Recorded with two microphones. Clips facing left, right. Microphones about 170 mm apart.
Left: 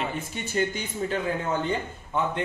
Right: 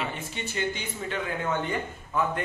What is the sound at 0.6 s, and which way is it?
Speech, 45° left (ahead or behind).